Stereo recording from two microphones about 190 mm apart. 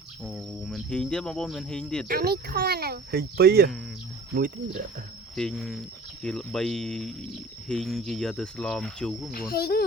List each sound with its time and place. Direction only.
0.2 s speech: centre (ahead or behind)
2.0 s speech: 55° right (ahead or behind)
5.3 s speech: centre (ahead or behind)
9.5 s speech: 55° left (ahead or behind)